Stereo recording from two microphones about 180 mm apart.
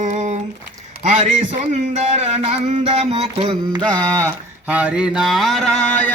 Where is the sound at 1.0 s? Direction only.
40° right (ahead or behind); by 6.1 s 10° left (ahead or behind).